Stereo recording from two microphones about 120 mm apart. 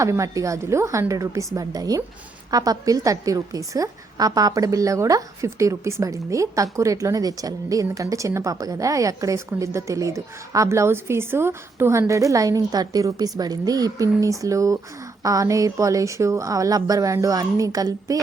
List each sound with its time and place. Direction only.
0.0 s a woman's voice: 25° right (ahead or behind)